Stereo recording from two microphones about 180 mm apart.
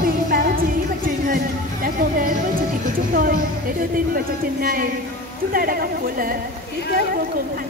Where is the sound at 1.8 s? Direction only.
50° right (ahead or behind).